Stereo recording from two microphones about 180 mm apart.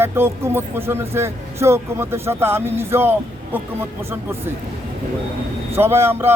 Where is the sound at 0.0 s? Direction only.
15° right (ahead or behind).